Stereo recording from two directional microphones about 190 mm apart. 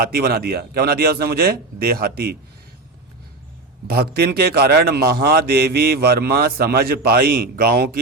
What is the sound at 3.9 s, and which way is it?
A man's voice, 55° right (ahead or behind).